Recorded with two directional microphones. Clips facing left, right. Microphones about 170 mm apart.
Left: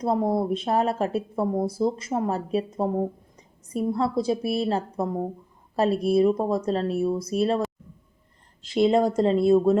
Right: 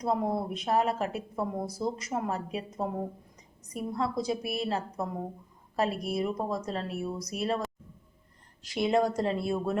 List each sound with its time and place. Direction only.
0.0 s speech: 30° left (ahead or behind)
8.6 s speech: 25° left (ahead or behind)